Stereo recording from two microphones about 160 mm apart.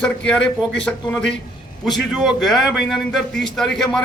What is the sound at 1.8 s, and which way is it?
A man's voice, centre (ahead or behind).